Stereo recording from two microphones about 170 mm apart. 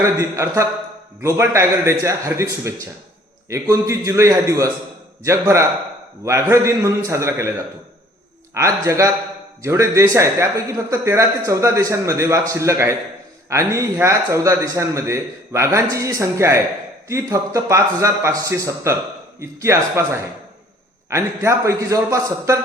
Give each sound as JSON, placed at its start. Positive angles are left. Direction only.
{"t": 0.0, "sound": "a man's voice", "side_deg": -15}
{"t": 8.5, "sound": "a man's voice", "side_deg": -15}